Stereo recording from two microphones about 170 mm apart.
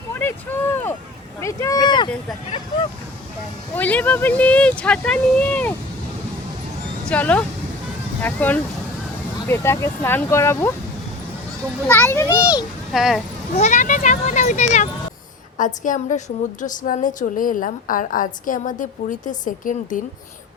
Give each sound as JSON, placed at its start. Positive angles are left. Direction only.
{"t": 0.1, "sound": "a sound", "side_deg": 10}
{"t": 1.4, "sound": "speech", "side_deg": 15}
{"t": 3.8, "sound": "speech", "side_deg": 10}
{"t": 7.1, "sound": "speech", "side_deg": 10}
{"t": 11.9, "sound": "speech", "side_deg": 10}
{"t": 12.9, "sound": "speech", "side_deg": 0}
{"t": 13.6, "sound": "a woman's voice", "side_deg": 45}